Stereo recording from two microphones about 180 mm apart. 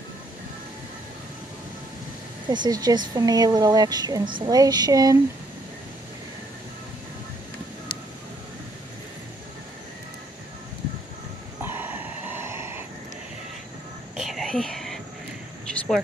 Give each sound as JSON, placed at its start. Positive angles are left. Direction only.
{"t": 2.5, "sound": "a woman's voice", "side_deg": -25}
{"t": 11.6, "sound": "dog", "side_deg": -10}
{"t": 14.1, "sound": "whispering", "side_deg": 0}